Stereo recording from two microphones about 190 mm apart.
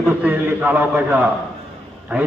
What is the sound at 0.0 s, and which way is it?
A man's voice, 10° right (ahead or behind).